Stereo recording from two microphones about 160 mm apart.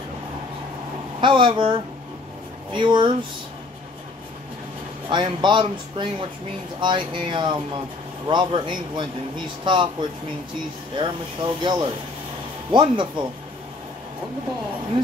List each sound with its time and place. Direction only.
1.2 s speech: 30° right (ahead or behind)
5.1 s speech: 30° right (ahead or behind)